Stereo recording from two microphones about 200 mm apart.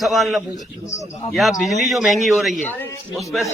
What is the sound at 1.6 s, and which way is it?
A man's voice, centre (ahead or behind).